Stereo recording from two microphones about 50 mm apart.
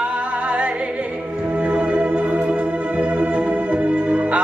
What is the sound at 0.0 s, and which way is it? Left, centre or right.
Music, right.